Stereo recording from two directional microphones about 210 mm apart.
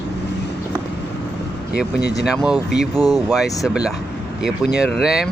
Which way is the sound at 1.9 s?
50° left (ahead or behind).